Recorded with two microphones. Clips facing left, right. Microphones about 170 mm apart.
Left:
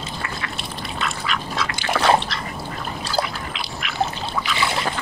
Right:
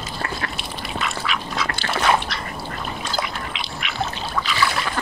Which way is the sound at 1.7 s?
15° left (ahead or behind).